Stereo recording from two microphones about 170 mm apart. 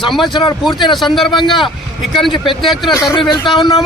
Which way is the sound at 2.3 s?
30° left (ahead or behind).